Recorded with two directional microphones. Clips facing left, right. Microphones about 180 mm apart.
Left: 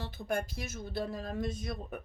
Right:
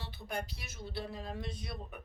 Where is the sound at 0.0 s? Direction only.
50° left (ahead or behind).